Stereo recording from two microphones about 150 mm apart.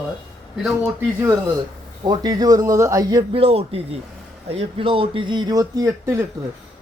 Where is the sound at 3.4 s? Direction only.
40° right (ahead or behind); by 6.2 s 20° right (ahead or behind).